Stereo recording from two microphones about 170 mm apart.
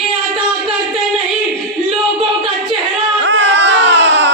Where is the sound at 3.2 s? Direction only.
90° right.